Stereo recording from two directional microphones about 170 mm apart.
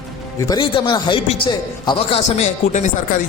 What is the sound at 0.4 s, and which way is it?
A man's voice, 25° left (ahead or behind).